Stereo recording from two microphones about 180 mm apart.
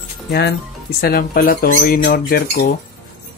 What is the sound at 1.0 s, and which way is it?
Speech, 60° left (ahead or behind).